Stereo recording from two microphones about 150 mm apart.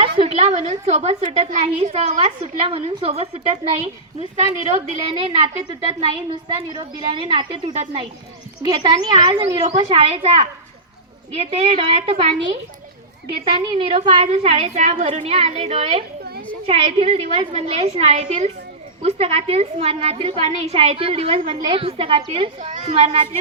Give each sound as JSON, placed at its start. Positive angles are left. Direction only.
{"t": 0.0, "sound": "a child's voice", "side_deg": -40}
{"t": 8.6, "sound": "speech", "side_deg": -30}
{"t": 9.6, "sound": "a child's voice", "side_deg": -40}
{"t": 13.7, "sound": "a child's voice", "side_deg": -35}